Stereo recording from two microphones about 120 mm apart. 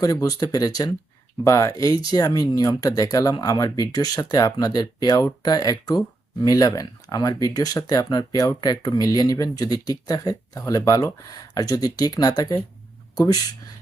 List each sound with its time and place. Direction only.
0.0 s speech: 30° left (ahead or behind)